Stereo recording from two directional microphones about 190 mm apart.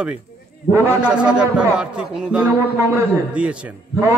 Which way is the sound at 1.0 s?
5° right (ahead or behind).